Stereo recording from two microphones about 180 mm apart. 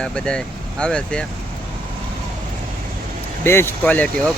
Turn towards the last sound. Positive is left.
turn(degrees=10)  # may be behind; listen again after turning